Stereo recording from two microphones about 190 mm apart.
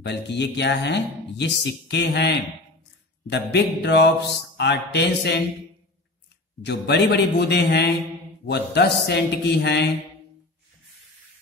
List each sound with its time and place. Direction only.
0.0 s speech: 65° left (ahead or behind)
6.6 s speech: 60° left (ahead or behind)